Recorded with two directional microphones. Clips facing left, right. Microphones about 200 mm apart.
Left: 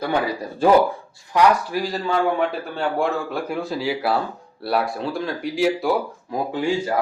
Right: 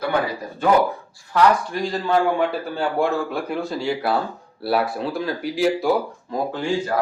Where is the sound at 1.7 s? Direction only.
5° left (ahead or behind).